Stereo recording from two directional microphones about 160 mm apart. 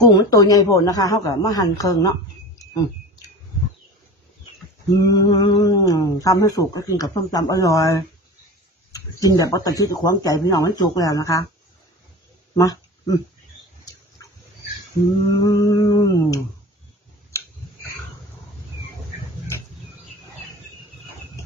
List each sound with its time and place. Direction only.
0.0 s speech: 25° left (ahead or behind)
5.0 s speech: 25° left (ahead or behind)
8.9 s speech: 20° left (ahead or behind)
12.5 s speech: 25° left (ahead or behind)
15.4 s speech: 25° left (ahead or behind)